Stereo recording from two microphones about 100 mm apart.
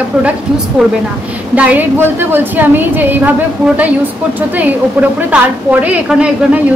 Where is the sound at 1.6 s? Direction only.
15° right (ahead or behind).